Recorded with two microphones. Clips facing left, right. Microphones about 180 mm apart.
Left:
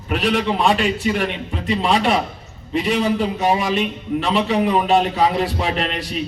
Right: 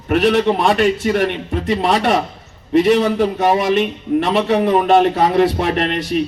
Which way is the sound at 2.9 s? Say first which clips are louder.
Right 4 dB; 50° right (ahead or behind).